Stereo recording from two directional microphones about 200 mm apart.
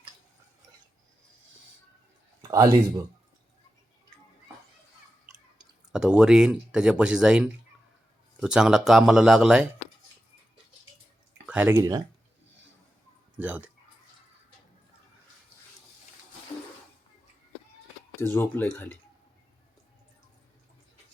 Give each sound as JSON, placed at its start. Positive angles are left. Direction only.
{"t": 2.4, "sound": "a sound", "side_deg": -15}
{"t": 5.9, "sound": "speech", "side_deg": -5}
{"t": 11.4, "sound": "speech", "side_deg": -10}
{"t": 13.3, "sound": "speech", "side_deg": -10}
{"t": 18.2, "sound": "speech", "side_deg": 10}